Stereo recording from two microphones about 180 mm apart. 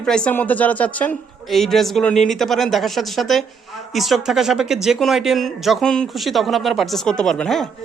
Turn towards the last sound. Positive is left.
turn(degrees=0)  # may be behind; listen again after turning